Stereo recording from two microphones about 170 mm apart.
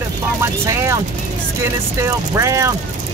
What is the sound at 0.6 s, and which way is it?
Speech, 15° right (ahead or behind).